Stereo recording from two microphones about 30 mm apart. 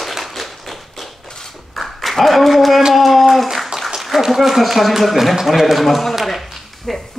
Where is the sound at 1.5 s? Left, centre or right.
Centre.